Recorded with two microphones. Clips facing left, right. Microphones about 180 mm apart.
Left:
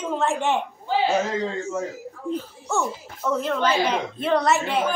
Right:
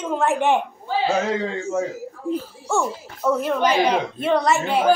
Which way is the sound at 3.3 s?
10° right (ahead or behind).